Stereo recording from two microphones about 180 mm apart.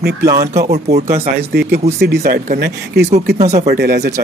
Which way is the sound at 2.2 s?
60° right (ahead or behind).